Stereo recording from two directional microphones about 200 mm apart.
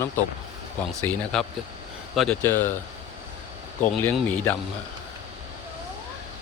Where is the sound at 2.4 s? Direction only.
10° left (ahead or behind).